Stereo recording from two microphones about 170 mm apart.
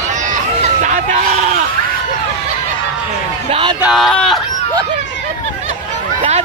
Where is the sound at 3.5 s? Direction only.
30° right (ahead or behind).